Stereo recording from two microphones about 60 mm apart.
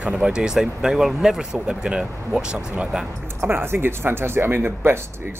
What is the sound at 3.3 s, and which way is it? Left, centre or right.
Speech, right.